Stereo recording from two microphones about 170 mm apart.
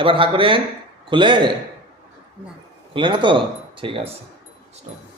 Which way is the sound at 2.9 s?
30° right (ahead or behind).